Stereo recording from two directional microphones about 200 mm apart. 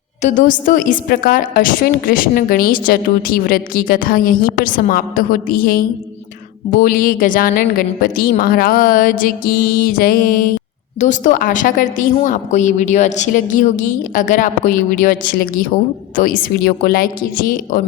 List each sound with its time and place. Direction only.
0.2 s a woman's voice: 40° left (ahead or behind)